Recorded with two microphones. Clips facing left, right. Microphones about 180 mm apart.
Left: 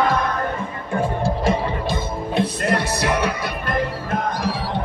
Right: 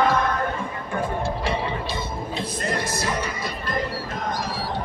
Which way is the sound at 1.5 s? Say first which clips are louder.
Left 5 dB; 50° left (ahead or behind).